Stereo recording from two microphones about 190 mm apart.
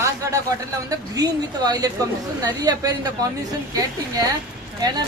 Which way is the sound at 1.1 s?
20° right (ahead or behind).